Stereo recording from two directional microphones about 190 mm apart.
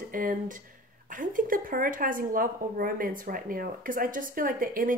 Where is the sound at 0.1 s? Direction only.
45° right (ahead or behind).